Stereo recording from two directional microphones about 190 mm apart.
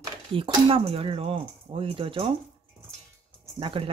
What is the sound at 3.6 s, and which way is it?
Speech, 25° right (ahead or behind).